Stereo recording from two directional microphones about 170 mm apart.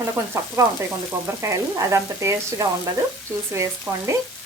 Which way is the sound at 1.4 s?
15° right (ahead or behind).